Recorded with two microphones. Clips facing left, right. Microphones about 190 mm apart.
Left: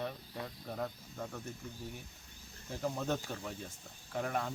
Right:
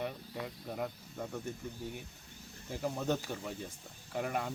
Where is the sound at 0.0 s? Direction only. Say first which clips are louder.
Right 2 dB; 10° right (ahead or behind).